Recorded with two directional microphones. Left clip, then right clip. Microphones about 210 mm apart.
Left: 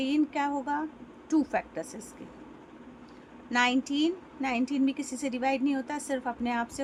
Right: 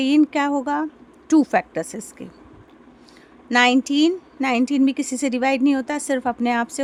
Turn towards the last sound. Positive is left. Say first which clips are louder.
# right 10 dB
turn(degrees=-55)  # may be behind; listen again after turning